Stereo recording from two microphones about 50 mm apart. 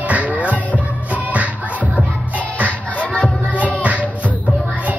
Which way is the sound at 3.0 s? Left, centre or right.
Left.